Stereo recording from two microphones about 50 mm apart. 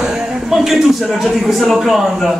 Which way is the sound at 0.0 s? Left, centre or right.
Centre.